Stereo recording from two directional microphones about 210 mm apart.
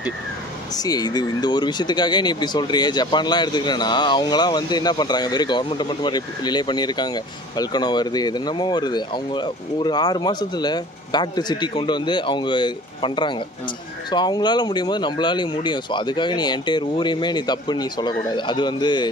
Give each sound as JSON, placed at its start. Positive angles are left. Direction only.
{"t": 0.7, "sound": "speech", "side_deg": 20}